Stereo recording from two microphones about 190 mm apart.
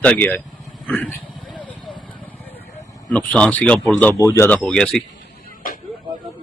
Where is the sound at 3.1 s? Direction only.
5° left (ahead or behind).